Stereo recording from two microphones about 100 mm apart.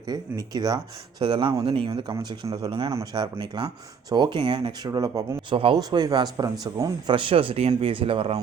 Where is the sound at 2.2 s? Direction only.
40° right (ahead or behind).